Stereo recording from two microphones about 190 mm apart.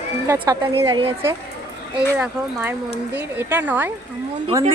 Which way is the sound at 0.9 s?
30° right (ahead or behind).